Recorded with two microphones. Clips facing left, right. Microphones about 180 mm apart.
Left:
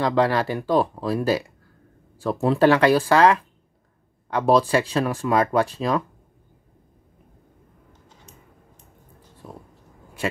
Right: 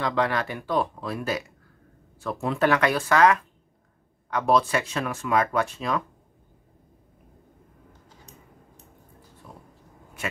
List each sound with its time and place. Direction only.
0.0 s speech: 35° left (ahead or behind)